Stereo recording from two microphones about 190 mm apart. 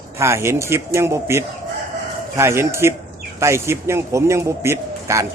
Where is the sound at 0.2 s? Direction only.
15° right (ahead or behind).